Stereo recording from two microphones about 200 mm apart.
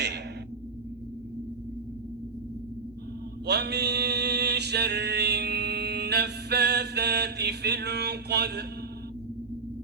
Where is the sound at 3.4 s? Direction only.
55° right (ahead or behind).